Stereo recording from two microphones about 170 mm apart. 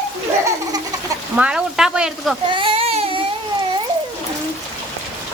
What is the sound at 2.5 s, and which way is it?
Baby cry, 30° right (ahead or behind).